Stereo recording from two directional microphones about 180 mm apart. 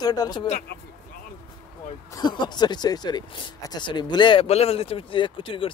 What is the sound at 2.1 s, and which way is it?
Speech, 25° left (ahead or behind).